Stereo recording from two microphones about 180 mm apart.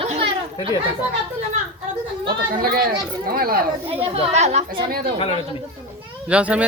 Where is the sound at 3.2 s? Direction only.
55° right (ahead or behind).